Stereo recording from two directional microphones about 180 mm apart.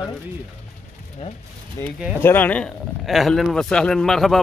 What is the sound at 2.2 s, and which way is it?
Speech, 10° left (ahead or behind).